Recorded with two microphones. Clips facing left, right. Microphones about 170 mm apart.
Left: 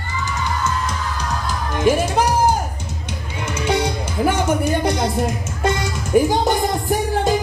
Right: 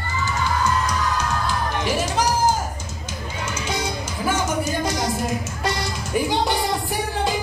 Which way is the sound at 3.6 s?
60° left (ahead or behind).